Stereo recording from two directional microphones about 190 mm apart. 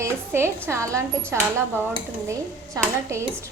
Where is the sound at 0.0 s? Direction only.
15° right (ahead or behind).